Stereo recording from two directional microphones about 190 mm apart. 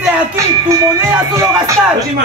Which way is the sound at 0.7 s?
15° right (ahead or behind).